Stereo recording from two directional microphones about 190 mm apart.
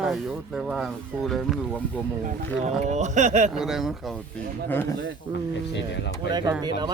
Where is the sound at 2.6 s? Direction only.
40° right (ahead or behind).